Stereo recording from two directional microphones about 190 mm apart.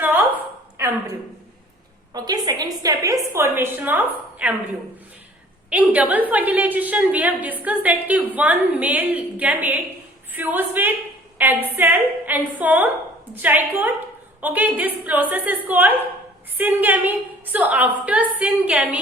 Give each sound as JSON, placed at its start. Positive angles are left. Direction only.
{"t": 0.8, "sound": "a sound", "side_deg": -15}
{"t": 2.1, "sound": "a woman's voice", "side_deg": -20}
{"t": 5.7, "sound": "a woman's voice", "side_deg": -10}